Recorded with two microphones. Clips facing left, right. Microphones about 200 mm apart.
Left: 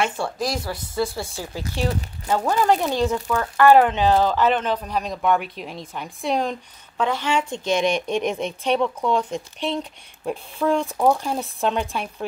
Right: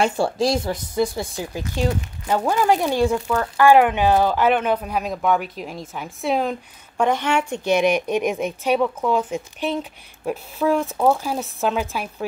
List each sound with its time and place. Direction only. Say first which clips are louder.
0.0 s a woman's voice: right 5 dB; 30° right (ahead or behind); by 6.5 s 5° right (ahead or behind)
7.0 s speech: right 3 dB; 15° right (ahead or behind)